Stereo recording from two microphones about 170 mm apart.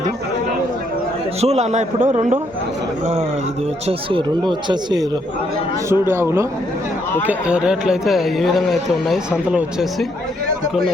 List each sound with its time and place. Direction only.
1.4 s a man's voice: 40° right (ahead or behind)
3.8 s speech: 30° right (ahead or behind)
5.9 s a man's voice: 15° right (ahead or behind)